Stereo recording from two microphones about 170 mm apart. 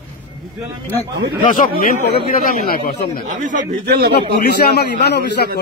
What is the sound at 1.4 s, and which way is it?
Speech, 55° left (ahead or behind).